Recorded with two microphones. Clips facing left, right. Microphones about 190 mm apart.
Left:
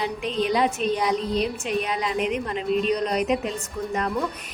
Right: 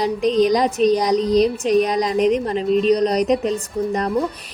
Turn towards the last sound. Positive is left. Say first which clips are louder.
# right 6 dB
turn(degrees=-35)  # may be behind; listen again after turning